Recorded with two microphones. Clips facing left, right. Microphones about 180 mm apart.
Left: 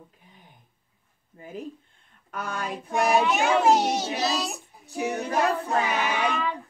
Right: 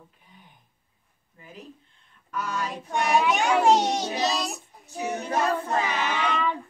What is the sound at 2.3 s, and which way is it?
Child singing, 55° left (ahead or behind).